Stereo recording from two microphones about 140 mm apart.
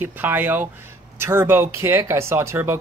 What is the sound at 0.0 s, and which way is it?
Speech, 15° right (ahead or behind).